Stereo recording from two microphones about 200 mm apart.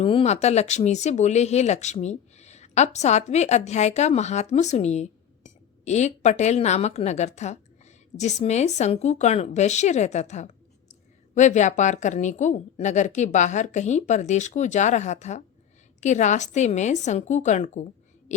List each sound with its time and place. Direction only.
0.0 s speech: 30° left (ahead or behind)